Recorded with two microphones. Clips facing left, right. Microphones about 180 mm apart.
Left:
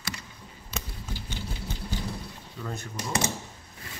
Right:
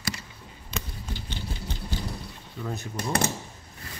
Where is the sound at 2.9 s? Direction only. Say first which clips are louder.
Right 3 dB; 60° right (ahead or behind).